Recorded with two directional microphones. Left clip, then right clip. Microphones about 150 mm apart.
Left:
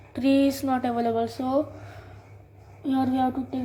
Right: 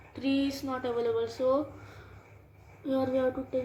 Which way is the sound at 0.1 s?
90° left.